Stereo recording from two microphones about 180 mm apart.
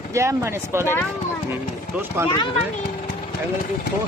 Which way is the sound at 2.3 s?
25° left (ahead or behind).